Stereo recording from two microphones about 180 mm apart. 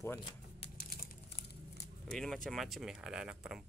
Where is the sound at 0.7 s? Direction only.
55° left (ahead or behind).